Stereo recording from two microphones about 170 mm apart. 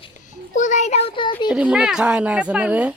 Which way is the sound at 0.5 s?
45° left (ahead or behind).